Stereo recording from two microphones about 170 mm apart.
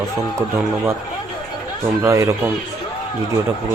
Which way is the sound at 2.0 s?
15° right (ahead or behind).